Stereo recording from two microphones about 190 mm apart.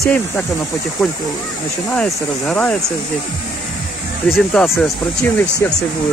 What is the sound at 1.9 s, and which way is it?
Speech, 5° left (ahead or behind).